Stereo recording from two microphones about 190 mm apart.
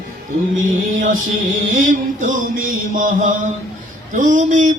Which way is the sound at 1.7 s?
45° right (ahead or behind).